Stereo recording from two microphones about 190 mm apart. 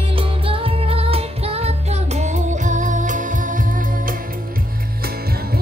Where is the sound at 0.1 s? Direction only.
30° right (ahead or behind).